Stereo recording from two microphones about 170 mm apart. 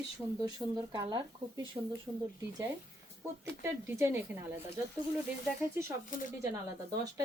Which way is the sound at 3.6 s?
15° right (ahead or behind).